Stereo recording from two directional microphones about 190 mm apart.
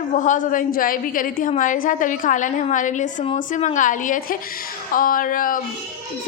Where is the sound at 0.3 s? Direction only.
45° left (ahead or behind).